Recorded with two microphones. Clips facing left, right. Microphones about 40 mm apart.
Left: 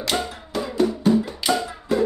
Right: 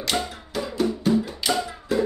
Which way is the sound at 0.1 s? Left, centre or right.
Centre.